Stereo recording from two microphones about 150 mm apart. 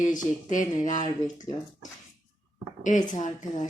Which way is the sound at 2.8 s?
55° left (ahead or behind).